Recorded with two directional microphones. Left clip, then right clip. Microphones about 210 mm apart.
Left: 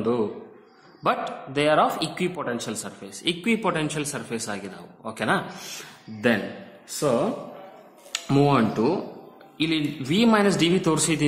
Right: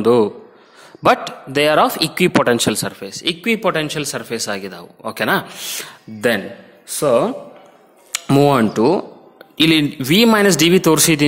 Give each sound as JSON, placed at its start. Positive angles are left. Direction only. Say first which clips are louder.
{"t": 1.0, "sound": "speech", "louder": "right 10 dB", "side_deg": -40}
{"t": 7.0, "sound": "speech", "louder": "right 8 dB", "side_deg": -45}